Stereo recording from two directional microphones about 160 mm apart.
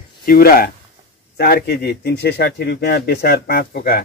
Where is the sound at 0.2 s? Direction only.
65° left (ahead or behind).